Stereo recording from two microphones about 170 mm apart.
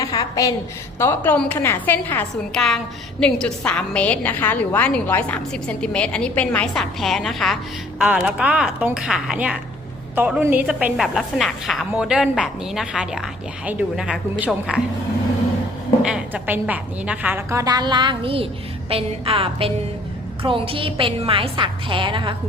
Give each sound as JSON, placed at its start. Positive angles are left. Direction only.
{"t": 0.0, "sound": "a sound", "side_deg": 20}
{"t": 0.9, "sound": "a woman's voice", "side_deg": 10}
{"t": 16.0, "sound": "a woman's voice", "side_deg": -10}